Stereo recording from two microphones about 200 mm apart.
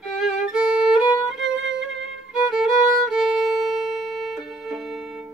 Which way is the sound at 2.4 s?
Centre (ahead or behind).